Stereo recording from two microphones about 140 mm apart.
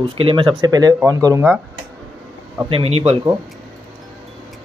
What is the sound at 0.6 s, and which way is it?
Speech, 30° right (ahead or behind).